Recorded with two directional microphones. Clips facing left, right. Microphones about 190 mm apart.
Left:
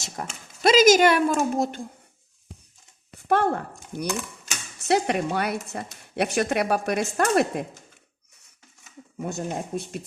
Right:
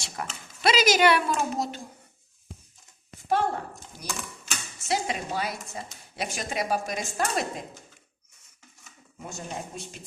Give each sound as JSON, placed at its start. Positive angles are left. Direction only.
{"t": 0.2, "sound": "speech", "side_deg": 40}
{"t": 3.2, "sound": "speech", "side_deg": 60}
{"t": 9.1, "sound": "speech", "side_deg": 55}